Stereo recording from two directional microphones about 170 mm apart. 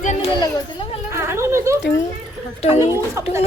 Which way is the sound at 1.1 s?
15° right (ahead or behind).